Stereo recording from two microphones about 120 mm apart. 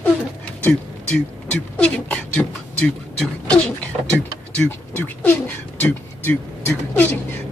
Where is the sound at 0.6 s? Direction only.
10° left (ahead or behind).